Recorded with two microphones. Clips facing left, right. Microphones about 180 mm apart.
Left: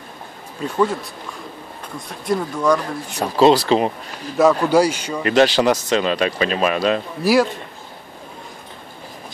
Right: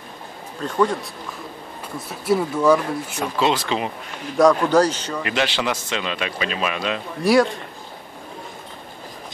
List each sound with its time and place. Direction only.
0.6 s speech: 5° left (ahead or behind)
2.0 s speech: 5° right (ahead or behind)
3.2 s speech: 35° left (ahead or behind)
4.4 s speech: 5° left (ahead or behind)
5.2 s speech: 40° left (ahead or behind)